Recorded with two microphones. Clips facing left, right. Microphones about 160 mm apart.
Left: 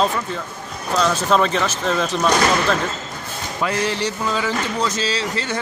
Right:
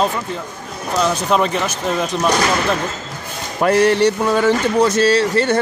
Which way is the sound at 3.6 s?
60° right (ahead or behind).